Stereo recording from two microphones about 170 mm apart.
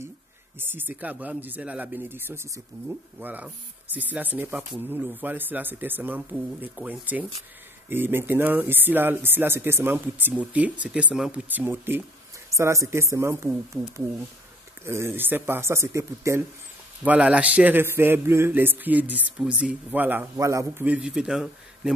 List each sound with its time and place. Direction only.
0.6 s speech: 10° right (ahead or behind)